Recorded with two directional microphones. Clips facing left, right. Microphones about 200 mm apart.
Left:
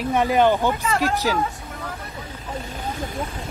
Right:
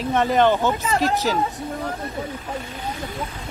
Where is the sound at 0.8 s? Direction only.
35° right (ahead or behind).